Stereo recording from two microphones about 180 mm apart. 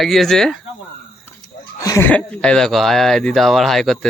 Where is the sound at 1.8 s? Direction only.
15° left (ahead or behind).